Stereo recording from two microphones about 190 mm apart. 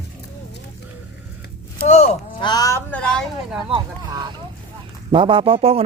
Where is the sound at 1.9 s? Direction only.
35° left (ahead or behind).